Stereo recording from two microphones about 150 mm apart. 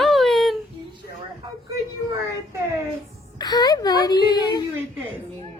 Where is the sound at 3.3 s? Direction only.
25° left (ahead or behind).